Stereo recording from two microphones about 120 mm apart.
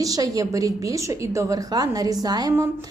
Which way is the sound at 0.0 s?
30° right (ahead or behind).